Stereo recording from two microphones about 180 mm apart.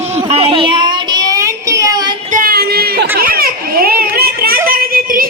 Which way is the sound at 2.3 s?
50° right (ahead or behind).